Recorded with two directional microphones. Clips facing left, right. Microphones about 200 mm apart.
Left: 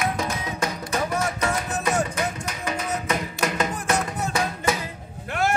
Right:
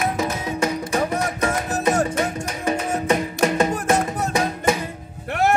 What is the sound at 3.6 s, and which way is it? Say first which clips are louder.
Music: right 5 dB; 25° right (ahead or behind).